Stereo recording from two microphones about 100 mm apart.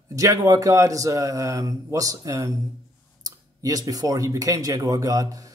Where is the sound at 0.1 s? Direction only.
35° right (ahead or behind).